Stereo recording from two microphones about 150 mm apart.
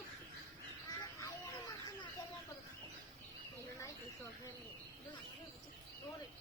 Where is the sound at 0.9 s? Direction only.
25° left (ahead or behind).